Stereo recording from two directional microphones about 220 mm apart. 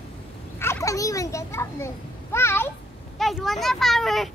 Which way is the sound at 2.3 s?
10° left (ahead or behind).